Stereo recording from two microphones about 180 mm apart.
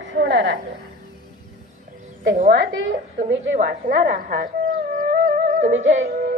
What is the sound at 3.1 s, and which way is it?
Speech, 75° right (ahead or behind).